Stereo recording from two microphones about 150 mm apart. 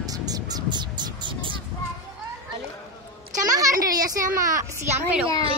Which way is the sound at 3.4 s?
20° right (ahead or behind).